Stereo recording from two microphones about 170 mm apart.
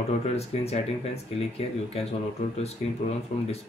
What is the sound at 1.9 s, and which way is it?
Speech, 35° left (ahead or behind).